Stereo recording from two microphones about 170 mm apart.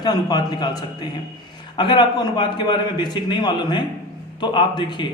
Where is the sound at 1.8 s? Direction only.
25° left (ahead or behind).